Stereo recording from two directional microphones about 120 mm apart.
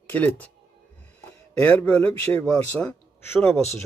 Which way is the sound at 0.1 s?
15° left (ahead or behind).